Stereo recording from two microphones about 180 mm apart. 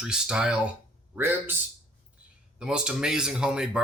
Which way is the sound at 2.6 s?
5° right (ahead or behind).